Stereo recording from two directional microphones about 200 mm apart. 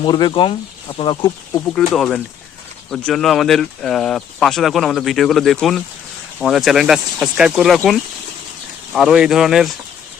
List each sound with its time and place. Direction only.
0.0 s speech: 20° left (ahead or behind)
1.9 s speech: centre (ahead or behind)